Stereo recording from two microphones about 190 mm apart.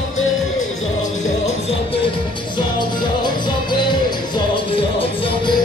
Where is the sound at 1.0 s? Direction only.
40° left (ahead or behind).